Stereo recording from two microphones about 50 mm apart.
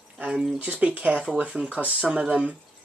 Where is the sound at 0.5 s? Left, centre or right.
Right.